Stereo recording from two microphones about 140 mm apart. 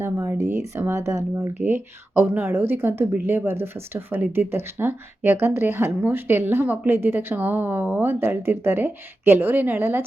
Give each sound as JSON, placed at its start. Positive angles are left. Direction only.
{"t": 0.0, "sound": "speech", "side_deg": -20}